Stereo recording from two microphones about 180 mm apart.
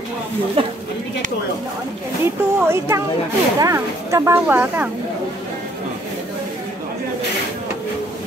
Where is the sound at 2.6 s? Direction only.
15° right (ahead or behind).